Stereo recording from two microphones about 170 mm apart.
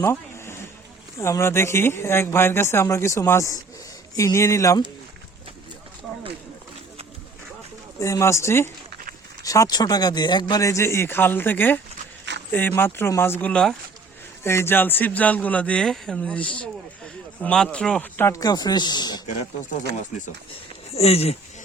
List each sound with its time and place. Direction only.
0.0 s a sound: 15° left (ahead or behind)
1.2 s a man's voice: 15° left (ahead or behind)
7.9 s a man's voice: 20° left (ahead or behind)
20.9 s speech: 35° left (ahead or behind)